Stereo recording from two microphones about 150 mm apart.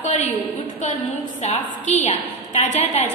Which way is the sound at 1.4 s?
50° left (ahead or behind).